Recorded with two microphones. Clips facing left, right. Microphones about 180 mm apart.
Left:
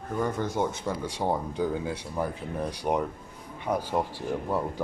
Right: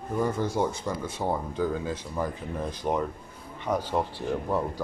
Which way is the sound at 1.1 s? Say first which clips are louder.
Left 1 dB; 15° left (ahead or behind).